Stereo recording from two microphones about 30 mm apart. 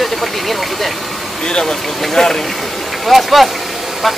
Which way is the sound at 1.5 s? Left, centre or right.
Left.